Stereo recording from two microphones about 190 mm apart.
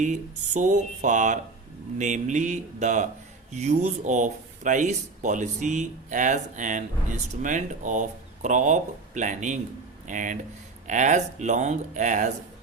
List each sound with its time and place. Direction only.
0.0 s speech: 40° right (ahead or behind)